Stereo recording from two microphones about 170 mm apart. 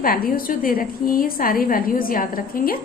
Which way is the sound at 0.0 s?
55° left (ahead or behind).